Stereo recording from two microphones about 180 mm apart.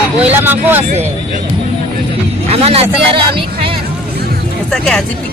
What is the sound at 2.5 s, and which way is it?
Speech, 35° right (ahead or behind).